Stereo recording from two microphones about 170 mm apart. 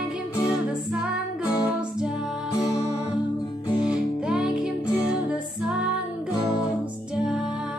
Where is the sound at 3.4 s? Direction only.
25° left (ahead or behind).